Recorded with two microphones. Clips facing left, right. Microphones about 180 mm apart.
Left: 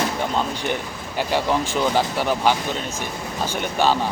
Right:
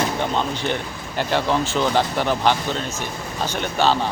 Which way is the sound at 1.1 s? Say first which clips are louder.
Right 1 dB; 10° left (ahead or behind).